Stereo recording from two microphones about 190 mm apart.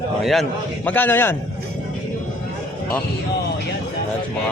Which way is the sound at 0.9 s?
10° left (ahead or behind).